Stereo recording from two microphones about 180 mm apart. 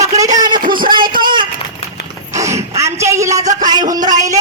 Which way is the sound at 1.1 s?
25° right (ahead or behind).